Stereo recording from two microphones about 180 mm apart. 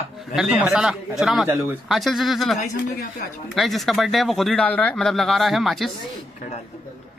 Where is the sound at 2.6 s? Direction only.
55° left (ahead or behind).